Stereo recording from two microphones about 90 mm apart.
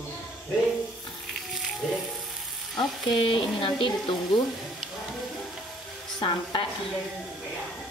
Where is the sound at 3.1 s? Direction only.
70° left (ahead or behind).